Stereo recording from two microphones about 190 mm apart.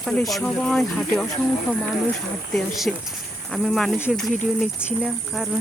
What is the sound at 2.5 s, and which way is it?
Speech, centre (ahead or behind).